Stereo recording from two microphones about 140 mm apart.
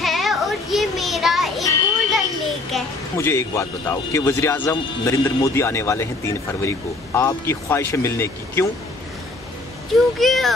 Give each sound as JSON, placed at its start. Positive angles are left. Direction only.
{"t": 0.0, "sound": "music", "side_deg": 0}
{"t": 2.7, "sound": "a sound", "side_deg": 0}
{"t": 3.2, "sound": "speech", "side_deg": 20}
{"t": 10.2, "sound": "speech", "side_deg": 0}